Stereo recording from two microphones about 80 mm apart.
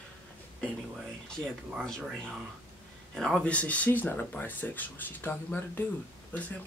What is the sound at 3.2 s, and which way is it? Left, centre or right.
Speech, centre.